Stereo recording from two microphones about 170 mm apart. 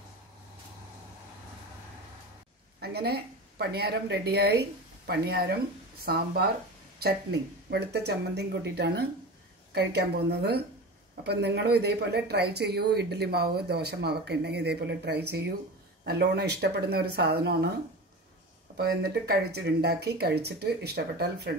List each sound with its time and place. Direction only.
2.8 s a woman's voice: 70° right (ahead or behind)
18.8 s speech: 65° right (ahead or behind)